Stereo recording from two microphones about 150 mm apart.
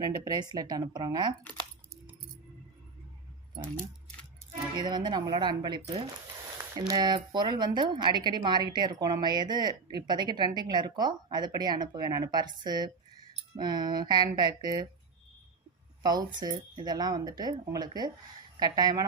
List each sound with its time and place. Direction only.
0.0 s speech: 25° right (ahead or behind)
4.8 s speech: 30° right (ahead or behind)
16.0 s speech: 25° right (ahead or behind)